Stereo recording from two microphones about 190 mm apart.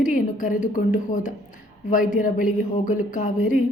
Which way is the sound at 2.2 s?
45° left (ahead or behind).